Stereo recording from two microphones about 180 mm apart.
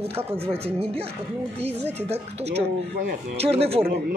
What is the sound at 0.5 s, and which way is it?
Speech, 35° right (ahead or behind).